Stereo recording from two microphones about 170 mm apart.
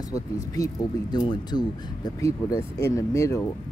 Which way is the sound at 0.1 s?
20° left (ahead or behind).